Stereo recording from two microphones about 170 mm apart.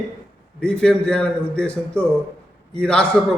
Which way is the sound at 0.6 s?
5° left (ahead or behind).